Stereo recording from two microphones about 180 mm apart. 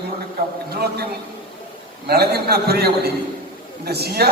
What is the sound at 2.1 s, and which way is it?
A man's voice, 60° right (ahead or behind).